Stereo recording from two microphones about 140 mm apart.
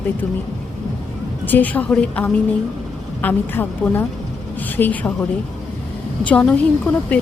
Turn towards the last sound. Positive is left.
turn(degrees=10)  # may be behind; listen again after turning